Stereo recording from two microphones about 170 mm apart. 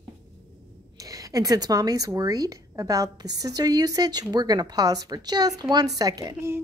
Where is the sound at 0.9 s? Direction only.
20° right (ahead or behind).